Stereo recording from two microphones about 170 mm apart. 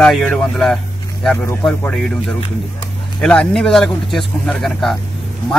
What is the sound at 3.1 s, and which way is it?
A man's voice, 5° left (ahead or behind).